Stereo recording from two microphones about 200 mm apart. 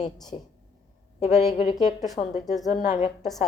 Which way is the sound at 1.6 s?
35° left (ahead or behind).